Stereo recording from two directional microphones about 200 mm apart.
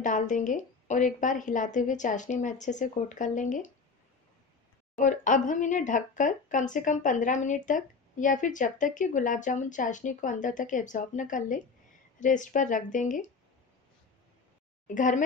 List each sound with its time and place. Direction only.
0.0 s speech: 40° left (ahead or behind)
4.9 s speech: 40° left (ahead or behind)
15.0 s speech: 40° left (ahead or behind)